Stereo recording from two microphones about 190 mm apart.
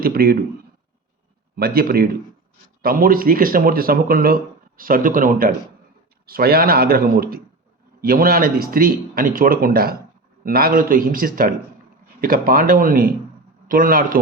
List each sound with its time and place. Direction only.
0.0 s speech: 50° right (ahead or behind)
1.5 s speech: 55° right (ahead or behind)